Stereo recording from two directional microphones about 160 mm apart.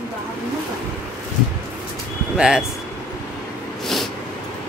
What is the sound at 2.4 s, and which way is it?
Speech, 5° right (ahead or behind).